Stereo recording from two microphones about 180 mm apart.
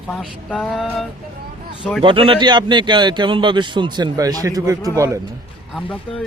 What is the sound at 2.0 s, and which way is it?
A man's voice, 30° right (ahead or behind).